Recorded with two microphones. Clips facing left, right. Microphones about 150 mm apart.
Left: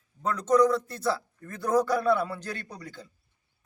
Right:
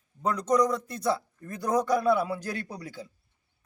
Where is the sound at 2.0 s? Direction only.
5° right (ahead or behind).